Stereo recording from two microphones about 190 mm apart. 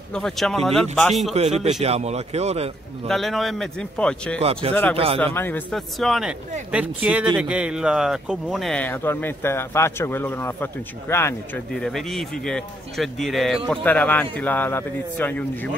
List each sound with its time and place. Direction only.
0.1 s speech: centre (ahead or behind)
1.3 s a man's voice: 35° right (ahead or behind)
3.1 s speech: centre (ahead or behind)
4.4 s a man's voice: 30° right (ahead or behind)
5.2 s speech: 10° left (ahead or behind)
11.7 s speech: centre (ahead or behind)